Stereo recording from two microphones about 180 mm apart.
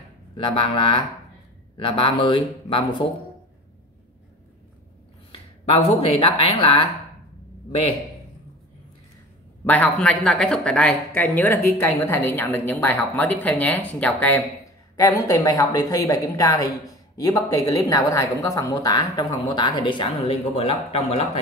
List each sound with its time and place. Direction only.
0.4 s speech: 30° left (ahead or behind)
5.3 s speech: 35° left (ahead or behind)
9.7 s speech: 5° left (ahead or behind)
15.0 s speech: 20° left (ahead or behind)